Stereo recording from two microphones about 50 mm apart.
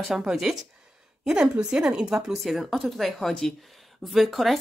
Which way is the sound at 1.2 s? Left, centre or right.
Centre.